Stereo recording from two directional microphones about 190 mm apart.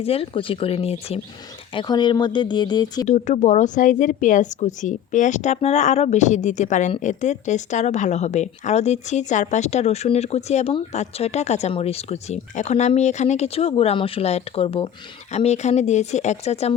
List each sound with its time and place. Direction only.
0.0 s speech: 30° left (ahead or behind)
3.1 s speech: 40° left (ahead or behind)